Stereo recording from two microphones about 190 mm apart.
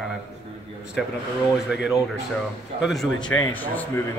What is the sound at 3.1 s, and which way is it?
Speech, 80° left.